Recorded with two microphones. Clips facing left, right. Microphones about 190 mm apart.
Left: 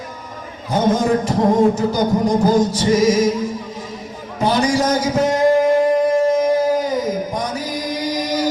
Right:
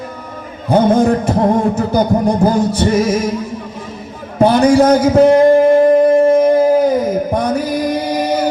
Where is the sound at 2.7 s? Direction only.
60° right (ahead or behind).